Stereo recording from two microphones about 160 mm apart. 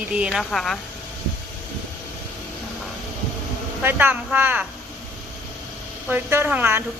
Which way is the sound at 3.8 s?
10° right (ahead or behind).